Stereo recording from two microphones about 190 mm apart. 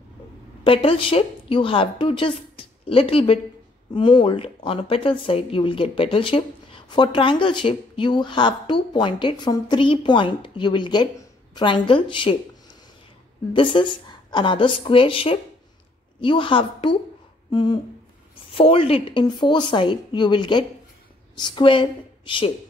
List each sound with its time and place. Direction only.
0.7 s a woman's voice: 30° left (ahead or behind)
13.5 s speech: 25° left (ahead or behind)
17.5 s a sound: 25° left (ahead or behind)
18.3 s speech: 30° left (ahead or behind)